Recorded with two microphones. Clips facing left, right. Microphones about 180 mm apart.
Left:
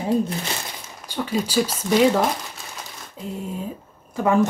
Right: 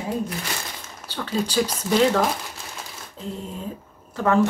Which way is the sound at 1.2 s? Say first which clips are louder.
Left 1 dB; 10° left (ahead or behind).